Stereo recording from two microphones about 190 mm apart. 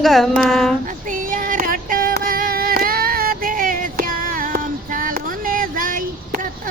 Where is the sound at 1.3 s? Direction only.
45° right (ahead or behind).